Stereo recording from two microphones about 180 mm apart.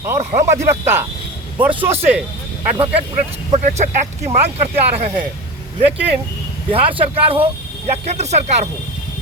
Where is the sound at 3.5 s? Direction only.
40° right (ahead or behind).